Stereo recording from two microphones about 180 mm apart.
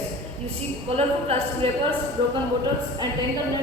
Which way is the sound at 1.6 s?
30° right (ahead or behind).